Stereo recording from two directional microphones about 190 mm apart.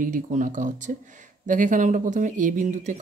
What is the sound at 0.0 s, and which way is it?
Speech, 45° right (ahead or behind).